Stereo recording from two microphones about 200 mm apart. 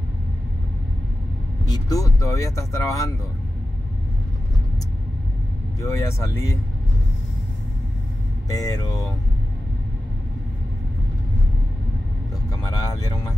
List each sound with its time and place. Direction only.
1.7 s speech: 15° left (ahead or behind)
5.8 s speech: 15° left (ahead or behind)
8.5 s speech: 20° left (ahead or behind)
12.4 s speech: 20° left (ahead or behind)